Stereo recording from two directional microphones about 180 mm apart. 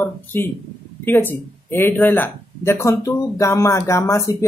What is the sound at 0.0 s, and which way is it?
Speech, 10° left (ahead or behind).